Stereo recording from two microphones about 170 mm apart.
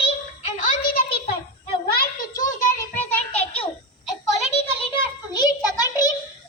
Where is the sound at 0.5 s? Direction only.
60° left (ahead or behind).